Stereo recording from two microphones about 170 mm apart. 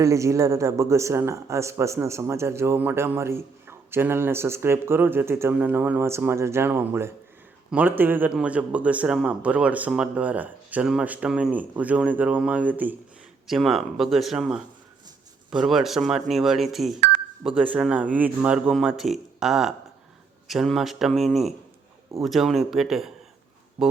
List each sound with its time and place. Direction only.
0.0 s speech: 20° right (ahead or behind)